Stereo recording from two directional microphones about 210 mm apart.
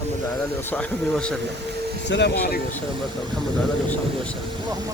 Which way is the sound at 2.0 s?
55° left (ahead or behind).